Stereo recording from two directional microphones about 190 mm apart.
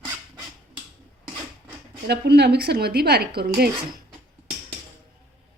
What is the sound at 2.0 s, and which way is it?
Speech, 60° right (ahead or behind).